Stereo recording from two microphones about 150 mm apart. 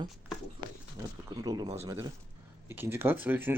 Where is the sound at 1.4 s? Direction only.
25° right (ahead or behind).